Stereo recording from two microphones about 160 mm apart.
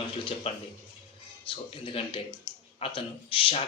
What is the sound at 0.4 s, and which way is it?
A man's voice, 40° left (ahead or behind).